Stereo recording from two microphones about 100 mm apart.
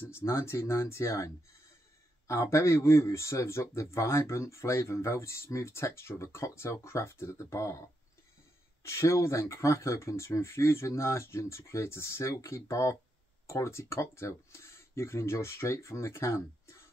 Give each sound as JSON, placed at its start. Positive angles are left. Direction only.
{"t": 0.1, "sound": "speech", "side_deg": 30}
{"t": 8.8, "sound": "speech", "side_deg": 30}